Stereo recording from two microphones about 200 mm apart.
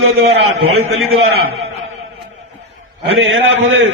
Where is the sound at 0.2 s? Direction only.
90° right.